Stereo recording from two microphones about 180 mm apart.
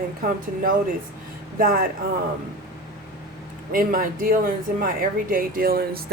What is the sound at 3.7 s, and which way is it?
A man's voice, 50° right (ahead or behind).